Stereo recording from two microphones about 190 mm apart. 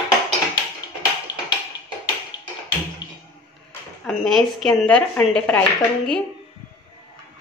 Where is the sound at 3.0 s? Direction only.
25° left (ahead or behind).